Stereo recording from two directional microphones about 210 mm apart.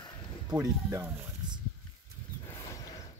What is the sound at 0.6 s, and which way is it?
Speech, 15° right (ahead or behind).